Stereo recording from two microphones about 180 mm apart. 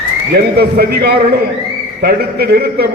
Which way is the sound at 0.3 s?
60° right (ahead or behind).